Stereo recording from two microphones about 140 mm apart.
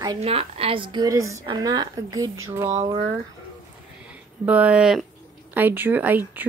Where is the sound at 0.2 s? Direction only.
45° right (ahead or behind); by 2.8 s 20° right (ahead or behind).